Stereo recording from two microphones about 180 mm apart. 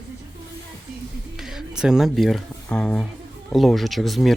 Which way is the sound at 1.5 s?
5° right (ahead or behind).